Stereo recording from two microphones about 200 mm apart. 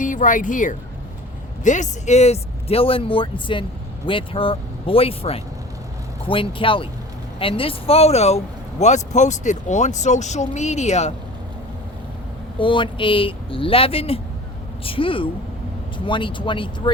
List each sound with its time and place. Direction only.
0.0 s speech: 40° left (ahead or behind)
12.5 s speech: 25° left (ahead or behind)